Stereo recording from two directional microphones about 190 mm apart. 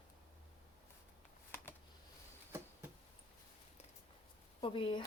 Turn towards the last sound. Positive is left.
turn(degrees=25)  # may be behind; listen again after turning